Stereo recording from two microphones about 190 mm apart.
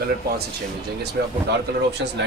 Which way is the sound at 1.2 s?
60° right (ahead or behind).